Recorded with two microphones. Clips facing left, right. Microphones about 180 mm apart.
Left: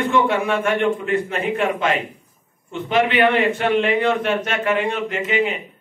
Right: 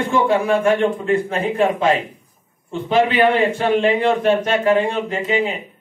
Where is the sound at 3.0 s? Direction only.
35° right (ahead or behind).